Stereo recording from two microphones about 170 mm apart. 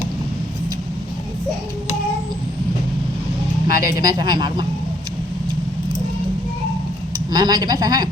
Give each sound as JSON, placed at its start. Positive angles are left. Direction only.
{"t": 3.7, "sound": "speech", "side_deg": 60}
{"t": 4.0, "sound": "a woman's voice", "side_deg": -25}
{"t": 7.3, "sound": "a woman's voice", "side_deg": -25}